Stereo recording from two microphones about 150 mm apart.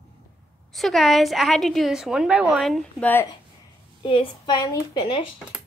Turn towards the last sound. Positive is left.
turn(degrees=35)  # may be behind; listen again after turning